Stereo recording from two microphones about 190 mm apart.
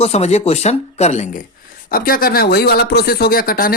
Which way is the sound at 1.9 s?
50° left (ahead or behind).